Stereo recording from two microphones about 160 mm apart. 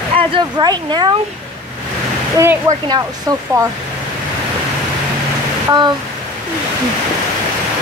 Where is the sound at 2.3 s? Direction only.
20° right (ahead or behind).